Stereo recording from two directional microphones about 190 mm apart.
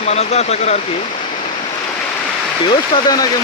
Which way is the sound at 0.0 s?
35° left (ahead or behind).